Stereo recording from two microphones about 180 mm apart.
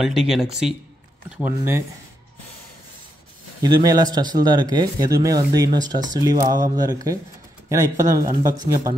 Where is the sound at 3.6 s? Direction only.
20° right (ahead or behind).